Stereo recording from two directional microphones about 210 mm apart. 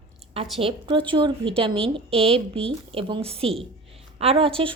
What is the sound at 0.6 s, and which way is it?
Speech, 25° right (ahead or behind).